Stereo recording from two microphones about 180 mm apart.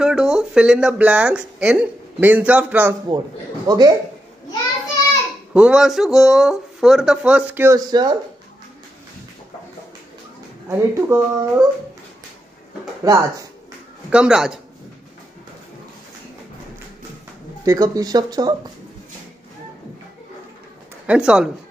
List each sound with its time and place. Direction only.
0.0 s speech: 5° right (ahead or behind)
3.6 s speech: 20° right (ahead or behind)
5.5 s speech: 5° right (ahead or behind); by 8.1 s 20° right (ahead or behind)
10.7 s speech: 15° right (ahead or behind)
13.0 s speech: 20° right (ahead or behind)
14.1 s speech: 5° right (ahead or behind)
17.6 s speech: 20° right (ahead or behind)
21.1 s speech: 5° right (ahead or behind)